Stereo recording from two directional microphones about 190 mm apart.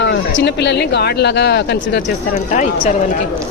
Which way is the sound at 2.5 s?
40° left (ahead or behind).